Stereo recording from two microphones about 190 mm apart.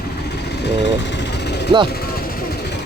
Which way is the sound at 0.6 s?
65° left (ahead or behind).